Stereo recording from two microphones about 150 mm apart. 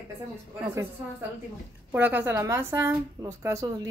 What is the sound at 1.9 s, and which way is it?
A woman's voice, 10° right (ahead or behind).